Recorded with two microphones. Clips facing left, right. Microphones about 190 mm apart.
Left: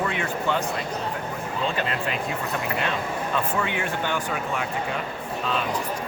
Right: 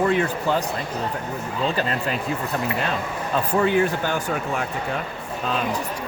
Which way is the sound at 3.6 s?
35° right (ahead or behind).